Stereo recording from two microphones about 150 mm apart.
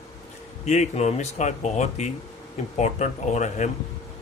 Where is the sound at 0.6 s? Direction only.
50° left (ahead or behind).